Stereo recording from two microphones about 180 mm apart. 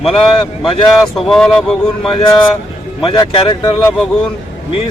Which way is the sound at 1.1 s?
Centre (ahead or behind).